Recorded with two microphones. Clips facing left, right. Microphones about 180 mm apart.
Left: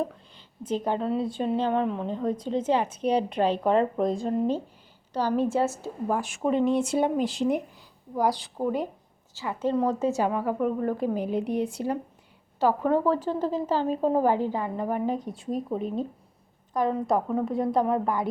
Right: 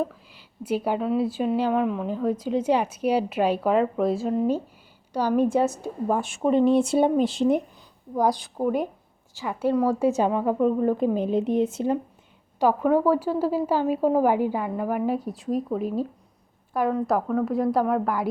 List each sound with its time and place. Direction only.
0.0 s a woman's voice: 5° right (ahead or behind); by 7.6 s 25° right (ahead or behind)
8.3 s a woman's voice: 15° right (ahead or behind)
12.5 s speech: 10° right (ahead or behind)